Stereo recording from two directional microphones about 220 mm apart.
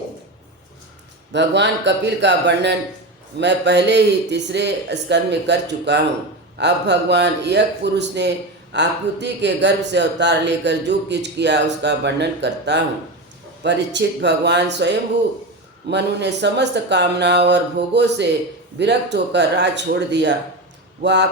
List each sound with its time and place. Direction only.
1.3 s speech: 50° right (ahead or behind)
15.9 s speech: 50° right (ahead or behind)